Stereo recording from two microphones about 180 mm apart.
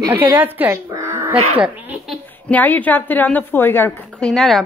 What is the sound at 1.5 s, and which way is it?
Baby laughter, 5° right (ahead or behind).